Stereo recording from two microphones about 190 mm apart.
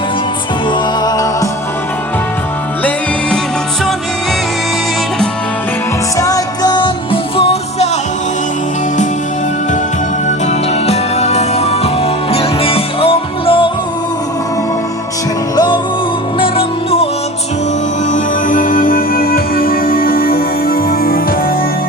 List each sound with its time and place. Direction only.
1.0 s music: 20° left (ahead or behind)
6.1 s music: 20° left (ahead or behind)
10.2 s music: 35° left (ahead or behind)
15.5 s music: 20° left (ahead or behind)
18.1 s music: 45° left (ahead or behind)